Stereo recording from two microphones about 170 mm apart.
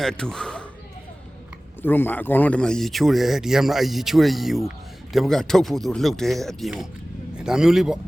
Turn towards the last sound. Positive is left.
turn(degrees=0)  # may be behind; listen again after turning